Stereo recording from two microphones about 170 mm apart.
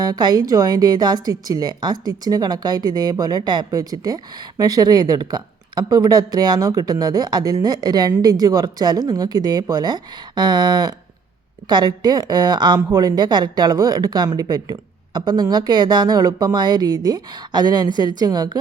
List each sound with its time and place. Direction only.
0.0 s a woman's voice: 25° right (ahead or behind)